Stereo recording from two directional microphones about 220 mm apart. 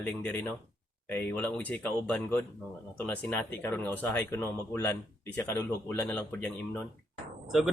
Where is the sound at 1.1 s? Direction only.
10° left (ahead or behind).